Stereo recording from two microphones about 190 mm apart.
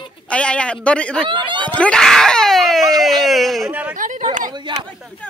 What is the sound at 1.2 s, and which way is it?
Speech, 25° right (ahead or behind).